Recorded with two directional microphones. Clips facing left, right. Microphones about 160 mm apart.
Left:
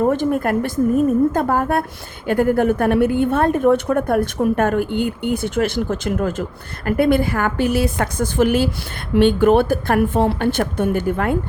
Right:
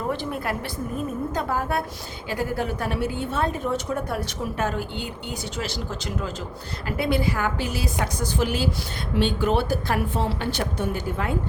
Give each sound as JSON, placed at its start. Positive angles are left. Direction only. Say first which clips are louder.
{"t": 0.0, "sound": "a woman's voice", "louder": "left 10 dB", "side_deg": 50}